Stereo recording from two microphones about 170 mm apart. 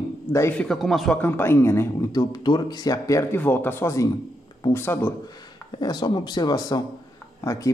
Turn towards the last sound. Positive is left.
turn(degrees=20)  # may be behind; listen again after turning